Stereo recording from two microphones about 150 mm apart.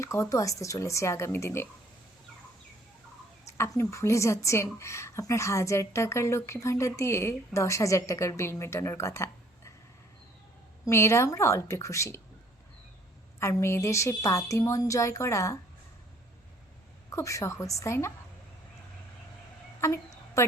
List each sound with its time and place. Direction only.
0.0 s a woman's voice: 20° left (ahead or behind)
3.4 s a woman's voice: 20° left (ahead or behind)
10.8 s a woman's voice: 20° left (ahead or behind)
13.4 s a woman's voice: 20° left (ahead or behind)
17.1 s a woman's voice: 20° left (ahead or behind)
19.8 s a sound: 20° left (ahead or behind)